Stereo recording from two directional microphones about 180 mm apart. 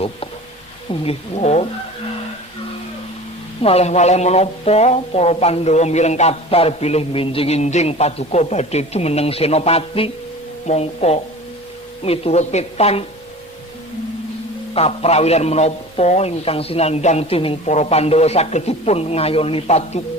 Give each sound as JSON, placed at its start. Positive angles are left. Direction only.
{"t": 0.9, "sound": "speech", "side_deg": 35}
{"t": 3.6, "sound": "speech", "side_deg": 35}
{"t": 14.7, "sound": "speech", "side_deg": 35}